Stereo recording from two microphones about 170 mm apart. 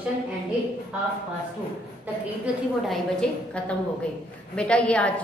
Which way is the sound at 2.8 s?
5° left (ahead or behind).